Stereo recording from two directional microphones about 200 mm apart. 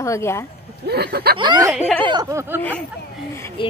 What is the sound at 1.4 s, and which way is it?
Speech, 20° right (ahead or behind).